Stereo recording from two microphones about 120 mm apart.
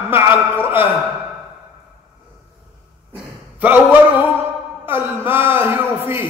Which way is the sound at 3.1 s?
15° right (ahead or behind).